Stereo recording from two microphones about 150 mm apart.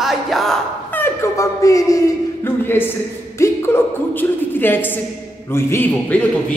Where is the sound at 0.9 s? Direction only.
15° left (ahead or behind).